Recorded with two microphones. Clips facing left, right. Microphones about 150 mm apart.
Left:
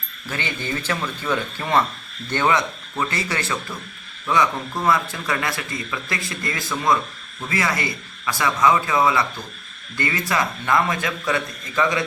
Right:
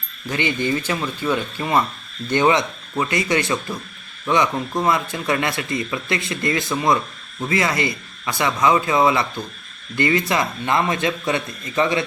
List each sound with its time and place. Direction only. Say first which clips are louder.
0.3 s speech: right 6 dB; 15° right (ahead or behind)